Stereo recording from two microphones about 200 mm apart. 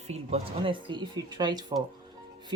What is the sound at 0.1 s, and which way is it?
Speech, 30° right (ahead or behind).